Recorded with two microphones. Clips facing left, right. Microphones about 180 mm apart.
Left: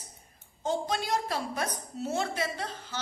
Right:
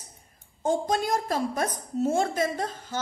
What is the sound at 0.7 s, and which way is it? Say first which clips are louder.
A woman's voice: right 5 dB; 50° right (ahead or behind).